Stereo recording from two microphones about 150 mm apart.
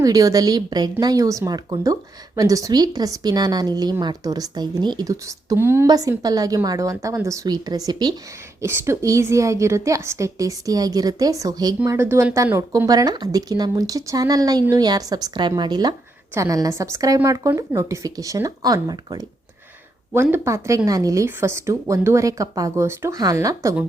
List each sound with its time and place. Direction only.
0.0 s speech: 25° right (ahead or behind)
20.2 s speech: 15° right (ahead or behind)